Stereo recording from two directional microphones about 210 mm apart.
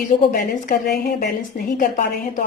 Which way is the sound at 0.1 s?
40° left (ahead or behind).